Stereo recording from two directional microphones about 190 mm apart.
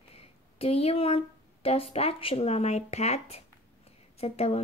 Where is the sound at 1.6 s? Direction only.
30° left (ahead or behind).